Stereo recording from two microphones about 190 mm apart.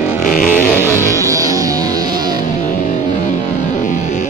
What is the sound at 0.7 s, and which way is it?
Music, 15° right (ahead or behind).